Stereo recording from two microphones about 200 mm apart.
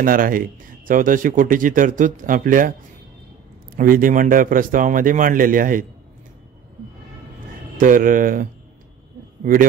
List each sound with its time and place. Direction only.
0.0 s speech: 45° right (ahead or behind)
3.7 s speech: 45° right (ahead or behind)
7.7 s speech: 40° right (ahead or behind)